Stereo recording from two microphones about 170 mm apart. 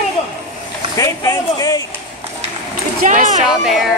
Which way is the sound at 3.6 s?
Centre (ahead or behind).